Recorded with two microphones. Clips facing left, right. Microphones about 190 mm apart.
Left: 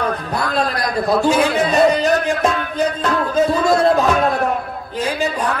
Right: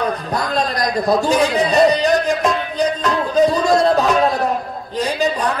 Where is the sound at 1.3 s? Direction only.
35° right (ahead or behind).